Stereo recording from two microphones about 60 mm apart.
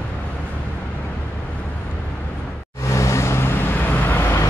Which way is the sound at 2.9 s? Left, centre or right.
Left.